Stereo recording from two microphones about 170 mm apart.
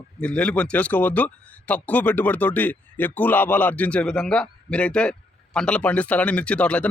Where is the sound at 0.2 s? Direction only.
5° left (ahead or behind).